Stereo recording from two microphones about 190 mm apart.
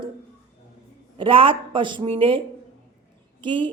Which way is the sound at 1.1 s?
25° right (ahead or behind).